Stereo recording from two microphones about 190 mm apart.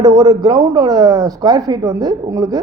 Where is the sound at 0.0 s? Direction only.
20° right (ahead or behind).